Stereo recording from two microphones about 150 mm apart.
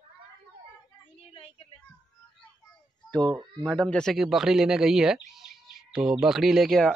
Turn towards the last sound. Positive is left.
turn(degrees=0)  # may be behind; listen again after turning